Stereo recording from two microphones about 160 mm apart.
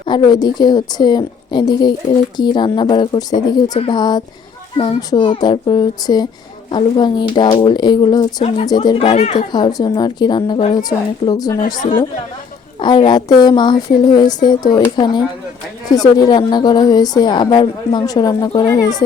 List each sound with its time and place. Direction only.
0.0 s a woman's voice: 30° left (ahead or behind)
9.5 s a woman's voice: 25° left (ahead or behind)
11.6 s a woman's voice: 55° left (ahead or behind)
12.8 s a woman's voice: 30° left (ahead or behind)